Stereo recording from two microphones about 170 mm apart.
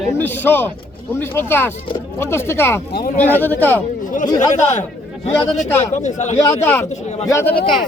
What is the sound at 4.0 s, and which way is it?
Chatter, 50° left (ahead or behind).